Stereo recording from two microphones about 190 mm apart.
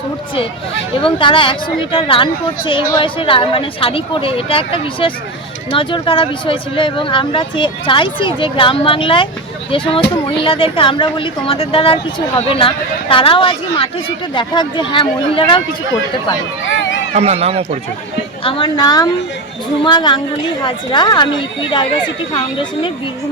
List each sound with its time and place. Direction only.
1.0 s speech: 25° left (ahead or behind)
17.2 s a man's voice: 35° right (ahead or behind)
18.4 s speech: 25° left (ahead or behind)